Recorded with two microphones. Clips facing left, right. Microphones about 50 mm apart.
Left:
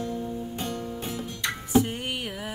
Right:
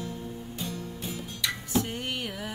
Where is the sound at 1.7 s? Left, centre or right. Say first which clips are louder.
Left 7 dB; centre.